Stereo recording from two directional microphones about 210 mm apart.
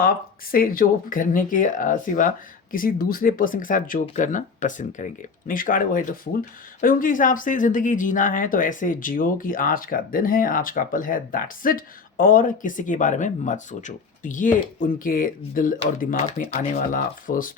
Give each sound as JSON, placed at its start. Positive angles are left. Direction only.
{"t": 0.5, "sound": "speech", "side_deg": 45}